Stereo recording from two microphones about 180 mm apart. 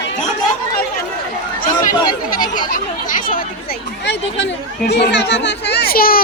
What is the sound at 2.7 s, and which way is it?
Speech, 50° left (ahead or behind).